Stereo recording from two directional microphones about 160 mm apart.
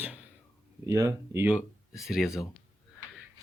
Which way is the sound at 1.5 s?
Centre (ahead or behind).